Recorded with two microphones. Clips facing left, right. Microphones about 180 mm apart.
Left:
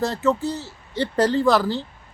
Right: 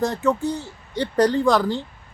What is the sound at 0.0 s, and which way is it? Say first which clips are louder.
A woman's voice: even; 15° right (ahead or behind).